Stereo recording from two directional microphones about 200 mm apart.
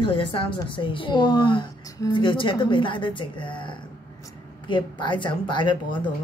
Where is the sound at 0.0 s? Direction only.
25° left (ahead or behind).